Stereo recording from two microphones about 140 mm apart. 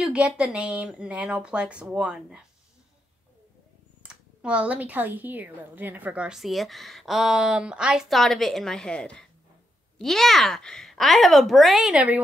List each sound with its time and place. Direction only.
0.0 s a woman's voice: 5° right (ahead or behind)
4.0 s a woman's voice: 5° right (ahead or behind)